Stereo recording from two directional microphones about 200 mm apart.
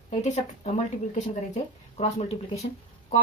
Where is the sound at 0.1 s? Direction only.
35° left (ahead or behind).